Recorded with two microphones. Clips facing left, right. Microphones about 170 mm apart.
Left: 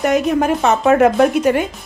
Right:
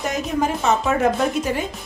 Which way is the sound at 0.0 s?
65° left (ahead or behind).